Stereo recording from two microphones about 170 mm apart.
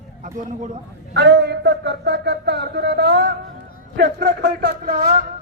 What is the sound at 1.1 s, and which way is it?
Speech, 90° right.